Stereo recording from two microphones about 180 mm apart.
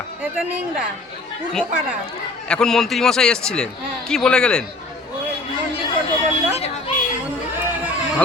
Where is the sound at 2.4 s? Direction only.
5° left (ahead or behind).